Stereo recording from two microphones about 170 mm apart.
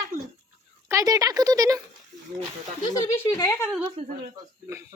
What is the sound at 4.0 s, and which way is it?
Speech, 35° right (ahead or behind).